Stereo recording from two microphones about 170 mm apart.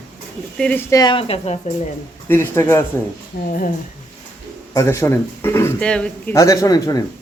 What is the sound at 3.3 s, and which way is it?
Speech, 60° left (ahead or behind).